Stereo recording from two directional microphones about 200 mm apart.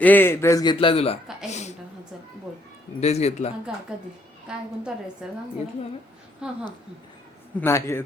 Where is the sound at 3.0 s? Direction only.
30° left (ahead or behind).